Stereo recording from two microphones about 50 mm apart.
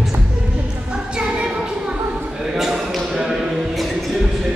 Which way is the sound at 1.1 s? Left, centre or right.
Centre.